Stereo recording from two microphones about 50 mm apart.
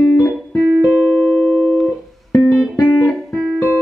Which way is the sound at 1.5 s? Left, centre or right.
Centre.